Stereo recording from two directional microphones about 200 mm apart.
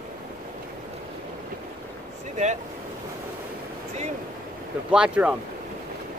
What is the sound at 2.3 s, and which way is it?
Speech, 35° right (ahead or behind).